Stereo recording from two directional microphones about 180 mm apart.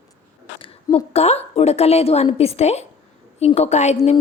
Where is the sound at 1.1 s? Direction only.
35° left (ahead or behind).